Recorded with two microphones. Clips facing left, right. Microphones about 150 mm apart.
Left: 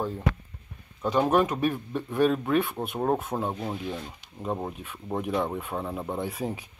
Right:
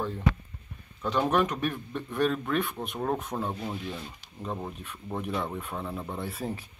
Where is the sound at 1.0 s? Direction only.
10° left (ahead or behind).